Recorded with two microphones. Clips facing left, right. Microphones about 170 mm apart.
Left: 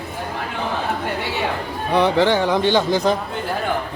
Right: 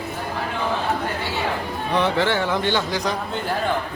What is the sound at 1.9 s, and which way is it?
A man's voice, 15° left (ahead or behind).